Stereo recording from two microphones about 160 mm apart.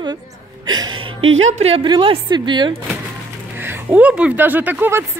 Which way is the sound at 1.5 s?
40° right (ahead or behind).